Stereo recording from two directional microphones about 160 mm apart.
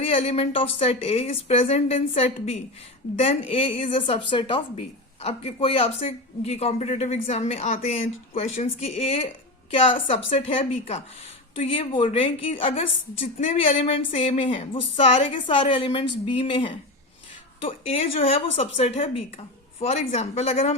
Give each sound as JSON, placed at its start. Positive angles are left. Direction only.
{"t": 0.0, "sound": "a man's voice", "side_deg": 35}
{"t": 13.4, "sound": "a man's voice", "side_deg": 50}